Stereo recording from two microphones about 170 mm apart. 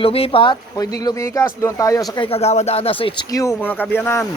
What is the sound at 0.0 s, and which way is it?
Speech, 35° left (ahead or behind).